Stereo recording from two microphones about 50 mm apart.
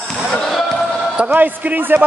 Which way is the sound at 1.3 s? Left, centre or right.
Right.